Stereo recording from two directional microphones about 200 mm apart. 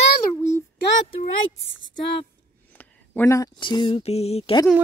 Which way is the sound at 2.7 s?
10° left (ahead or behind).